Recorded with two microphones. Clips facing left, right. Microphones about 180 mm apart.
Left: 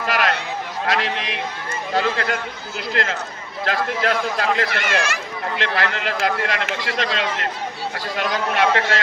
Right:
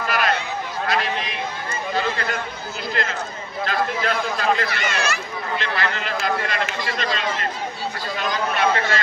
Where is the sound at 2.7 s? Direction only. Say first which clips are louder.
Left 3 dB; 90° left.